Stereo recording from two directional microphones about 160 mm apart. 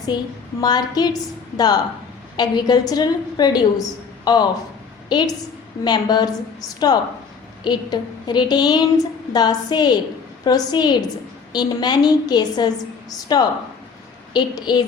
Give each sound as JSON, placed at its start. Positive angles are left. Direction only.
{"t": 0.1, "sound": "a woman's voice", "side_deg": 25}